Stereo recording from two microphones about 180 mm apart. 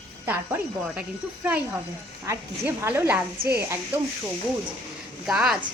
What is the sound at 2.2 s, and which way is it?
A woman's voice, 15° right (ahead or behind).